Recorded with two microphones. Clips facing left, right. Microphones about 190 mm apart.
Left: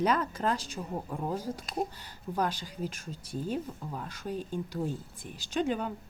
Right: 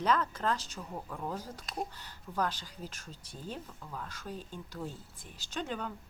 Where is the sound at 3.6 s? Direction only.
25° left (ahead or behind).